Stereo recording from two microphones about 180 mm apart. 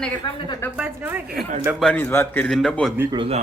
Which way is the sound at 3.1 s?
30° right (ahead or behind).